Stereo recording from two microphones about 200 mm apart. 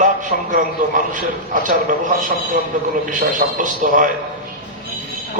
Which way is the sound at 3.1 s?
40° right (ahead or behind).